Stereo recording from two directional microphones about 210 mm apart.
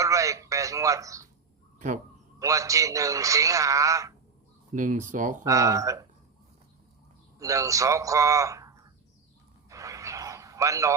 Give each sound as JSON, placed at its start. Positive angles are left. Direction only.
{"t": 0.0, "sound": "speech", "side_deg": -15}
{"t": 2.4, "sound": "speech", "side_deg": -15}
{"t": 4.7, "sound": "speech", "side_deg": -35}
{"t": 5.5, "sound": "speech", "side_deg": -15}
{"t": 7.3, "sound": "speech", "side_deg": -15}
{"t": 9.6, "sound": "a sound", "side_deg": -15}